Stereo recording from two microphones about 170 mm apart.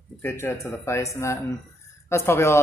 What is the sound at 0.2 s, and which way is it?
Speech, 15° left (ahead or behind).